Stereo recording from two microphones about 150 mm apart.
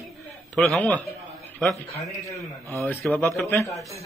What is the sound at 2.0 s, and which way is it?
Speech, 20° left (ahead or behind).